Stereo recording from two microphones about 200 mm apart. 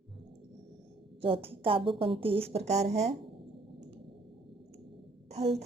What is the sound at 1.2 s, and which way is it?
A woman's voice, 25° right (ahead or behind).